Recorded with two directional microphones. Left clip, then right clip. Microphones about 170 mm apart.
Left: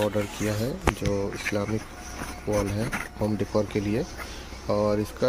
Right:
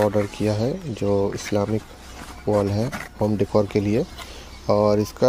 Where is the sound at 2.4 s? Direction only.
25° right (ahead or behind).